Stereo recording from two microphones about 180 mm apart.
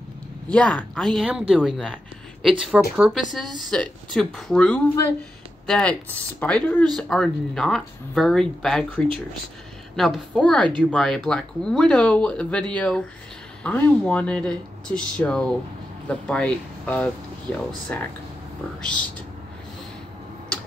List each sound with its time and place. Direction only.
0.5 s speech: 5° left (ahead or behind)